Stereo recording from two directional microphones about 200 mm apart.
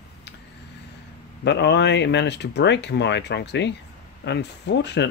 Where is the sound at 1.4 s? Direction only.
60° left (ahead or behind).